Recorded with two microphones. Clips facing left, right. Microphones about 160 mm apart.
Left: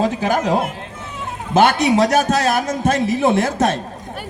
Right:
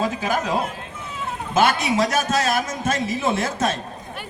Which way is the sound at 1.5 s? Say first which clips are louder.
Left 5 dB; 60° left (ahead or behind).